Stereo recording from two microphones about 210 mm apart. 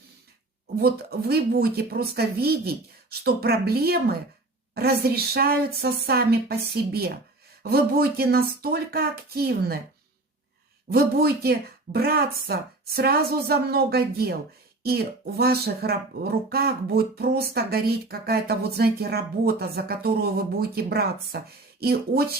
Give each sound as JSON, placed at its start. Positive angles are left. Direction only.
{"t": 0.8, "sound": "speech", "side_deg": -45}
{"t": 10.9, "sound": "speech", "side_deg": -45}